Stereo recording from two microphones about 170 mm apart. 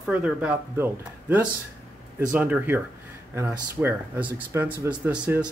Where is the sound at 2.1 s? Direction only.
10° right (ahead or behind).